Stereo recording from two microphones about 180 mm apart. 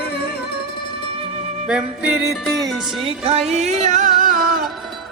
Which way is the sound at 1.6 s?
5° right (ahead or behind).